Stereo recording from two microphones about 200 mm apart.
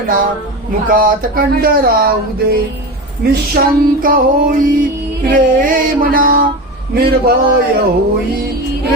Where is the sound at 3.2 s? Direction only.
50° right (ahead or behind).